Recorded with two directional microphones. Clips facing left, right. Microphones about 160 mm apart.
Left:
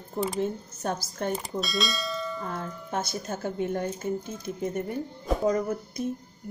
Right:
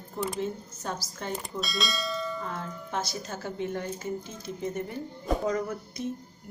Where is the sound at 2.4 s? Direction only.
55° left (ahead or behind).